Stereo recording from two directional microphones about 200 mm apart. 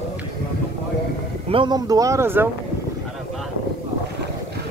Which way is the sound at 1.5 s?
25° right (ahead or behind).